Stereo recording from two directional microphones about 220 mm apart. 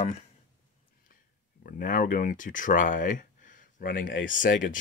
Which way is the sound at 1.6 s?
40° left (ahead or behind).